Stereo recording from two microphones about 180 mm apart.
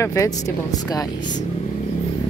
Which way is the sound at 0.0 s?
15° left (ahead or behind).